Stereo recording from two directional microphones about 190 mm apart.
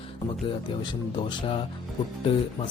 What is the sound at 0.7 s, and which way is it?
Speech, 25° left (ahead or behind).